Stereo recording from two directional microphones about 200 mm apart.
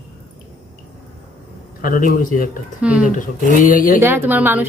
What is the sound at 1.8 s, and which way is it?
Speech, 45° left (ahead or behind).